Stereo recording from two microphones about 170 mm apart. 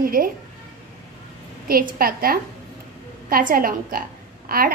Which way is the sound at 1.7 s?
60° right (ahead or behind).